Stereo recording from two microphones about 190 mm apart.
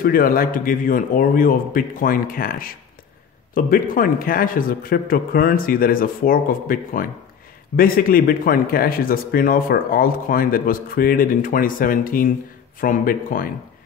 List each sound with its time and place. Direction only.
0.0 s speech: 50° left (ahead or behind)